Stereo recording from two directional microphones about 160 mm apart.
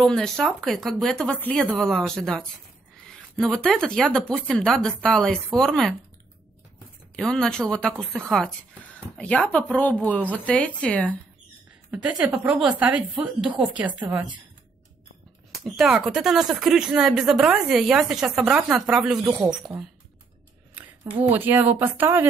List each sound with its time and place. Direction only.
0.0 s speech: 5° left (ahead or behind)
7.2 s a woman's voice: 5° left (ahead or behind)
11.9 s speech: 10° right (ahead or behind)
15.6 s speech: centre (ahead or behind)
19.3 s speech: 20° right (ahead or behind)
21.2 s speech: 10° right (ahead or behind)